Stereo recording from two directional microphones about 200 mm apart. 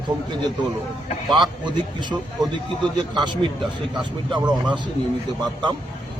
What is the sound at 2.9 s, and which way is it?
Speech, 20° right (ahead or behind).